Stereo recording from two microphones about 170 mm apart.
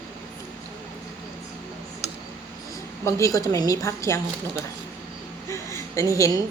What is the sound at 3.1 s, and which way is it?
Speech, 20° left (ahead or behind).